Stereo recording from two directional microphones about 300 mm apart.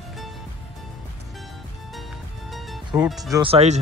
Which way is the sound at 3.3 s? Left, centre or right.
Centre.